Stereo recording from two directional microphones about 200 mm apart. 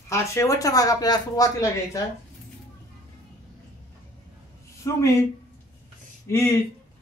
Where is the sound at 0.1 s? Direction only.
15° left (ahead or behind).